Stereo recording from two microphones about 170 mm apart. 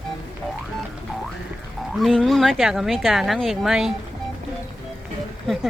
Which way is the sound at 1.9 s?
Centre (ahead or behind).